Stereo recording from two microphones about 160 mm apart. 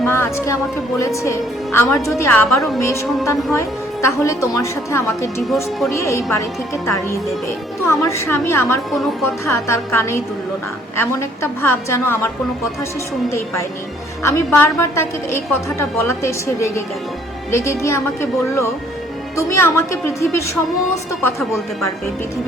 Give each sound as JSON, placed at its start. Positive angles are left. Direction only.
{"t": 0.1, "sound": "a woman's voice", "side_deg": 15}
{"t": 13.3, "sound": "a woman's voice", "side_deg": 15}